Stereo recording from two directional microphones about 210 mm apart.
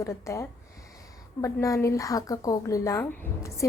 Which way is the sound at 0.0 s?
15° left (ahead or behind).